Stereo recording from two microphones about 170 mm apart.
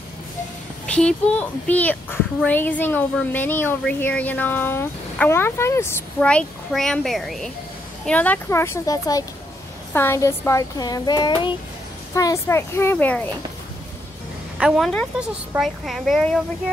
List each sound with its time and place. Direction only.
0.8 s a child's voice: 5° left (ahead or behind)
14.6 s speech: 5° right (ahead or behind)